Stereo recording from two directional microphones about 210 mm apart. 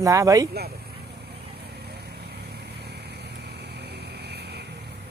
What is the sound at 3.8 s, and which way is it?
Vehicle, 50° right (ahead or behind).